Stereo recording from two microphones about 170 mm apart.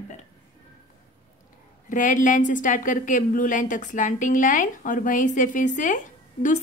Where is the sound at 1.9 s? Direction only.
50° left (ahead or behind).